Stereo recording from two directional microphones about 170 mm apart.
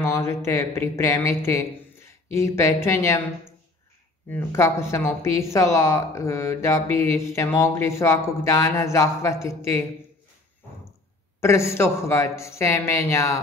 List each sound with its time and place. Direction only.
0.0 s speech: 15° left (ahead or behind)
4.3 s speech: 15° left (ahead or behind)
11.4 s speech: 15° left (ahead or behind)